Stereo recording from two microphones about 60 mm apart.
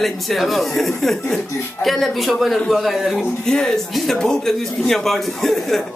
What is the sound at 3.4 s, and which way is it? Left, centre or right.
Speech, centre.